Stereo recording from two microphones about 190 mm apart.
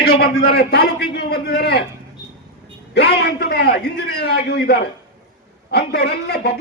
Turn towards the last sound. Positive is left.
turn(degrees=60)  # may be behind; listen again after turning